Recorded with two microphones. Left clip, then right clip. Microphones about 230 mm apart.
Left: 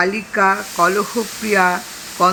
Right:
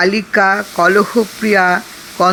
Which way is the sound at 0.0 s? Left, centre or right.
Right.